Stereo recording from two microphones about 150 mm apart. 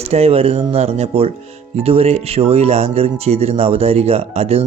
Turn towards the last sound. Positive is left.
turn(degrees=-45)  # may be behind; listen again after turning